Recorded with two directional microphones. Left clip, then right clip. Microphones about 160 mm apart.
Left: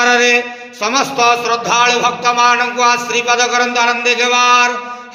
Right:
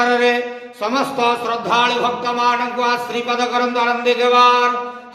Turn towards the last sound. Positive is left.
turn(degrees=10)  # may be behind; listen again after turning